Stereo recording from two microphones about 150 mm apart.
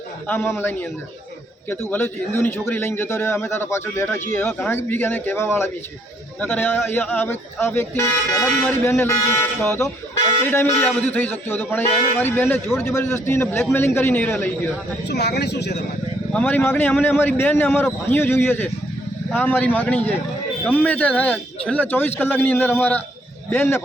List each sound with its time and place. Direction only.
0.3 s a man's voice: 15° left (ahead or behind)
1.9 s a man's voice: 15° left (ahead or behind)
8.8 s a man's voice: 15° left (ahead or behind)
15.1 s speech: 90° left
16.3 s a man's voice: 10° left (ahead or behind)